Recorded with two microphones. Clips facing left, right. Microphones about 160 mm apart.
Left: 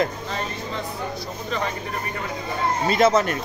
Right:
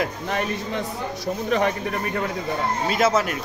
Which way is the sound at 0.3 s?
65° right (ahead or behind).